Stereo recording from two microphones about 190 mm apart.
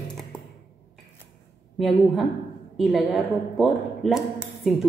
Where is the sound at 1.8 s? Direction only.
Centre (ahead or behind).